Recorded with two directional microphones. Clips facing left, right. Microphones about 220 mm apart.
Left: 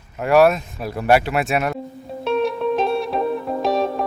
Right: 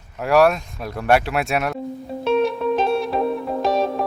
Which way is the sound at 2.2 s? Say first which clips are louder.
Right 1 dB; centre (ahead or behind).